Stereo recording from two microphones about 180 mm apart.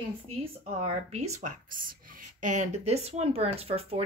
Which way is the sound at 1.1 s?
40° right (ahead or behind).